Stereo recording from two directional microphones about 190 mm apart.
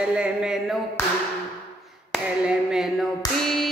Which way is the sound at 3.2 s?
20° left (ahead or behind).